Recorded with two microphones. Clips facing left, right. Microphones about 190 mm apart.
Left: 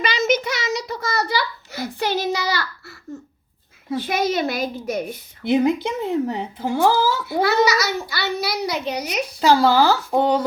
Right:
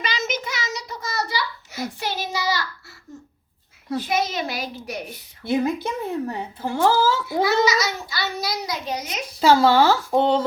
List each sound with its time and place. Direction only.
0.0 s a sound: 60° left (ahead or behind)
2.0 s child singing: 65° left (ahead or behind)
4.2 s a child's voice: 55° left (ahead or behind)
5.5 s speech: 20° left (ahead or behind)
7.4 s a child's voice: 65° left (ahead or behind)
9.4 s speech: centre (ahead or behind)